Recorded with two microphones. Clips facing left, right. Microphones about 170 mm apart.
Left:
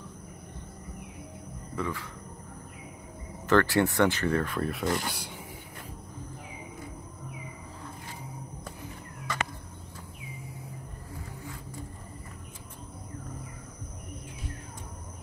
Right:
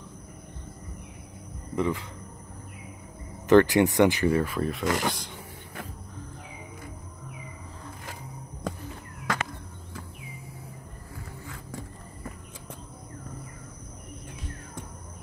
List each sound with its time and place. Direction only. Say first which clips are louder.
1.8 s speech: right 6 dB; 20° right (ahead or behind)
3.4 s speech: right 5 dB; 15° right (ahead or behind); by 4.8 s centre (ahead or behind)
4.8 s speech: right 4 dB; 90° right
9.3 s a sound: right 3 dB; 90° right